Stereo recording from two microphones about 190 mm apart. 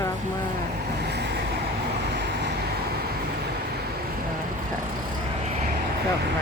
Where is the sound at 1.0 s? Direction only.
60° right (ahead or behind).